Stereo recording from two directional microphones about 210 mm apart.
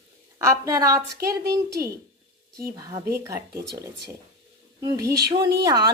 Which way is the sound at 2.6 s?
15° right (ahead or behind).